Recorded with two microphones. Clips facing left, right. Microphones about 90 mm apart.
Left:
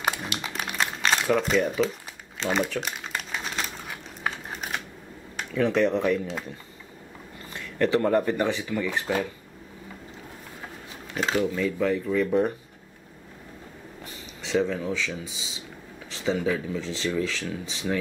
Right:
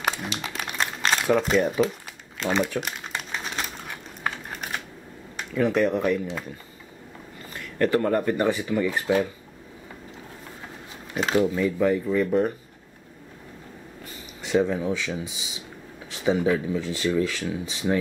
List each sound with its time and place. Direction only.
0.0 s a sound: 5° left (ahead or behind)
1.5 s speech: centre (ahead or behind)
2.4 s crumpling: 5° right (ahead or behind)
5.5 s speech: 5° right (ahead or behind)
7.5 s speech: centre (ahead or behind)
11.3 s speech: 15° right (ahead or behind)
14.4 s speech: 10° right (ahead or behind)